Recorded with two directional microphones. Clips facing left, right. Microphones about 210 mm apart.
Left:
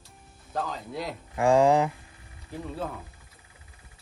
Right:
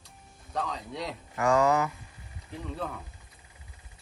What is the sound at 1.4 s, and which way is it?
Speech, 30° left (ahead or behind).